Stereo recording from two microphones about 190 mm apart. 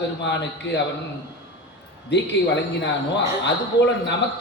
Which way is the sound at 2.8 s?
65° left (ahead or behind).